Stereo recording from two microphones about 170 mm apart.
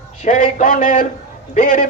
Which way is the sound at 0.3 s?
50° left (ahead or behind).